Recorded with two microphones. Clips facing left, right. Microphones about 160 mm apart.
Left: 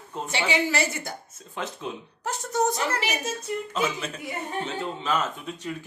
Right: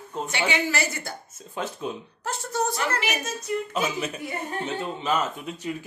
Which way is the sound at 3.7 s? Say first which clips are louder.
Right 1 dB; 10° right (ahead or behind).